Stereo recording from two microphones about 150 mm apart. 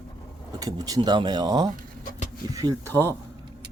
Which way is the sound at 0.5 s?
25° right (ahead or behind).